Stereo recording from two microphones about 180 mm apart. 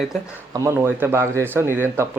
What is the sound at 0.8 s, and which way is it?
Speech, 15° right (ahead or behind).